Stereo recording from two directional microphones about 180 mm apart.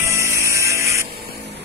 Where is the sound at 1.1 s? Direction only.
60° right (ahead or behind).